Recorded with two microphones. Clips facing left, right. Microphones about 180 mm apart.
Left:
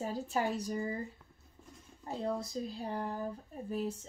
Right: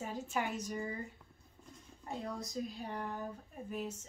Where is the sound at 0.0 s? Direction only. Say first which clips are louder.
Left 4 dB; 35° left (ahead or behind).